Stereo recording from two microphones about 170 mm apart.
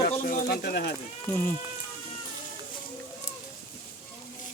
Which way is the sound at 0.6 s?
75° left (ahead or behind).